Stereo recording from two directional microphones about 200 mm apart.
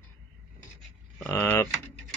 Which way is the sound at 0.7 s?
15° left (ahead or behind).